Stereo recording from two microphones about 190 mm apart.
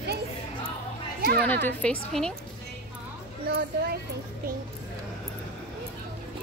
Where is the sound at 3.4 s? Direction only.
55° right (ahead or behind).